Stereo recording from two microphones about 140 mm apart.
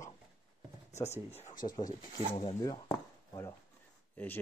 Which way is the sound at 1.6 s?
35° left (ahead or behind).